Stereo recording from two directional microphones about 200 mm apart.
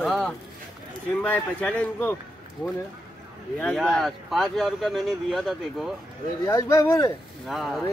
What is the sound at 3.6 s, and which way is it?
Speech, 5° left (ahead or behind).